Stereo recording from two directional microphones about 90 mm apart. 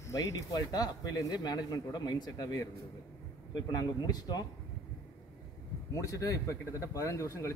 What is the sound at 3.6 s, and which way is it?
Speech, 45° left (ahead or behind).